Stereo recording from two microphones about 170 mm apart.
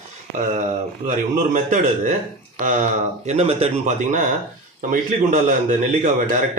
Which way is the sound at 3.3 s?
40° right (ahead or behind).